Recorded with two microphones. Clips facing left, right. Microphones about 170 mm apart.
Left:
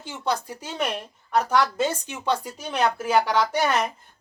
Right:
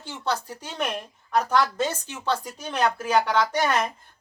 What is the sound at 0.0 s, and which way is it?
Speech, 15° left (ahead or behind).